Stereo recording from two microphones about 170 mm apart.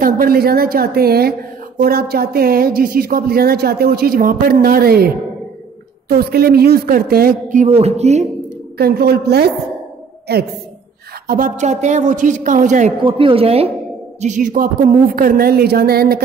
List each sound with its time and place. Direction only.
0.0 s speech: 60° right (ahead or behind); by 8.3 s 40° right (ahead or behind)
8.7 s a woman's voice: 65° right (ahead or behind)
11.2 s a man's voice: 50° right (ahead or behind)
13.0 s speech: 30° right (ahead or behind)
14.2 s speech: 45° right (ahead or behind); by 16.2 s 65° right (ahead or behind)